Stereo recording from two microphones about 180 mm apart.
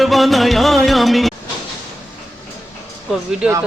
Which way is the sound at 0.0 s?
Centre (ahead or behind).